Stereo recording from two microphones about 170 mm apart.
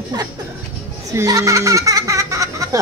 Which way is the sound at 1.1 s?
20° right (ahead or behind).